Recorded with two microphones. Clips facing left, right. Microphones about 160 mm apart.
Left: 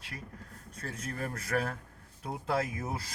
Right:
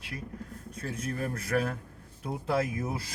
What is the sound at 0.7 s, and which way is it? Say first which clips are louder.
Speech: right 4 dB; 15° right (ahead or behind).